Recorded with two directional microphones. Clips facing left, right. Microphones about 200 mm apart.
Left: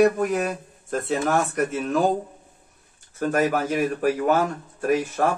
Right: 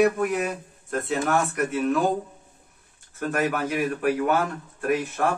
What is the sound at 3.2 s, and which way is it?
A man's voice, 40° left (ahead or behind).